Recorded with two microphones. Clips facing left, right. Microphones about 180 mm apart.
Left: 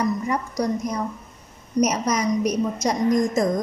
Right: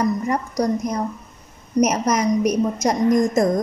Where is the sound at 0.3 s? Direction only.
45° right (ahead or behind).